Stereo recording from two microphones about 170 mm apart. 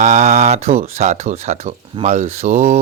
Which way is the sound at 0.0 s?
45° right (ahead or behind).